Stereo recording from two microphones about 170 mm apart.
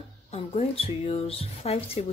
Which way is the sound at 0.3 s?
35° left (ahead or behind).